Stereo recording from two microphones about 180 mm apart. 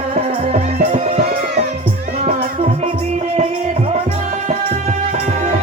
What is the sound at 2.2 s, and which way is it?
Music, 35° right (ahead or behind).